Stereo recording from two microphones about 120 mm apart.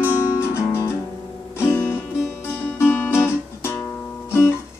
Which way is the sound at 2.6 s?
15° left (ahead or behind).